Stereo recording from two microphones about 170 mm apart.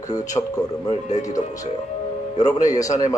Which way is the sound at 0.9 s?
45° left (ahead or behind).